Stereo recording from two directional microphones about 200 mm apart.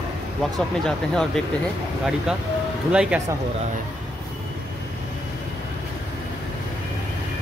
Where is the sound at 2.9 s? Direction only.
5° right (ahead or behind).